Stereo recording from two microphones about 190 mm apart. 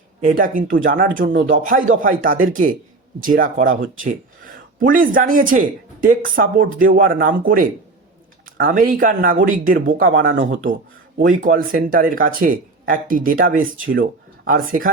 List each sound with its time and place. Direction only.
0.3 s speech: 45° right (ahead or behind)
1.1 s speech: 70° right (ahead or behind)
1.5 s speech: 45° right (ahead or behind)